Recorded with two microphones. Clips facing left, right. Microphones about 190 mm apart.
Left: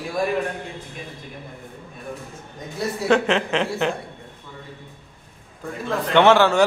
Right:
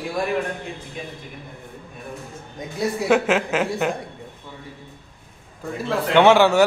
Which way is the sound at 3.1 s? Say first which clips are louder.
Left 1 dB; 5° right (ahead or behind).